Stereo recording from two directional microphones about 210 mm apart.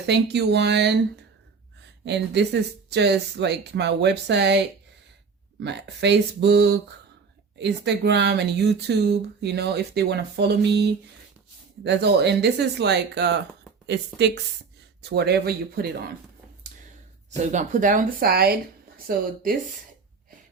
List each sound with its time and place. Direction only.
0.0 s speech: 55° right (ahead or behind)
2.0 s speech: 55° right (ahead or behind)
16.7 s a sound: 40° right (ahead or behind)
17.3 s speech: 35° right (ahead or behind)